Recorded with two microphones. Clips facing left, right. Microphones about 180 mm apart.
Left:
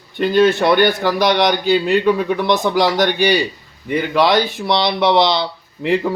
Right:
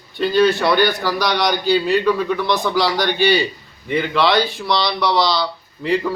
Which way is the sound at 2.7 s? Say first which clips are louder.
Left 3 dB; 50° left (ahead or behind).